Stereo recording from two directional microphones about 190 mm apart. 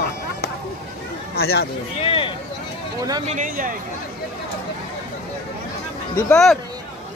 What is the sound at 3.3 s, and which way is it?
Speech, 45° right (ahead or behind).